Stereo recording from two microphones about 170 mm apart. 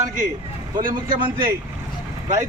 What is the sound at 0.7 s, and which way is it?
Speech, 55° right (ahead or behind).